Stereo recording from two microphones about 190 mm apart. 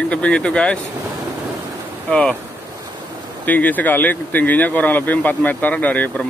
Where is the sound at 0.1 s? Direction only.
5° left (ahead or behind).